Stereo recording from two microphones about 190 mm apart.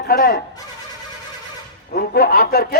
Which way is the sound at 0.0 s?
55° left (ahead or behind).